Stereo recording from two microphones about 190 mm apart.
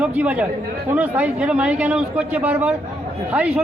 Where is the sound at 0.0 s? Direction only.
5° right (ahead or behind).